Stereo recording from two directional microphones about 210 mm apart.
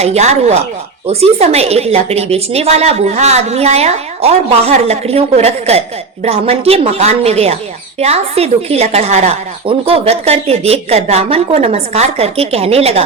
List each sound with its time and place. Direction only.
0.0 s a woman's voice: 30° right (ahead or behind)